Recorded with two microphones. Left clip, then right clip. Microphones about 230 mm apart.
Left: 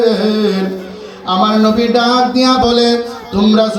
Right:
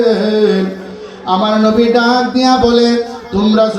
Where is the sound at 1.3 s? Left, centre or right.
Left.